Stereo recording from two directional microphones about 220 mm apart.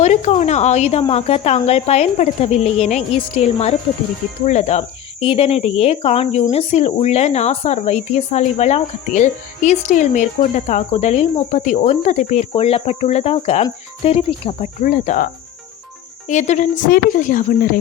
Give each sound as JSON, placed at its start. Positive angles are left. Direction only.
{"t": 0.0, "sound": "a woman's voice", "side_deg": 30}